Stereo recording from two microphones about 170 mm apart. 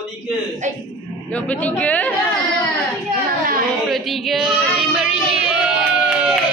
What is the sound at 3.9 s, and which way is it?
Child singing, centre (ahead or behind).